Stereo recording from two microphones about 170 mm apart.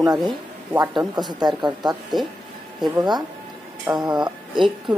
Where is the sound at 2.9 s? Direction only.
25° right (ahead or behind).